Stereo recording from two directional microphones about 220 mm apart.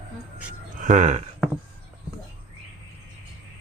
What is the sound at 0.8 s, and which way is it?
Speech, 30° right (ahead or behind).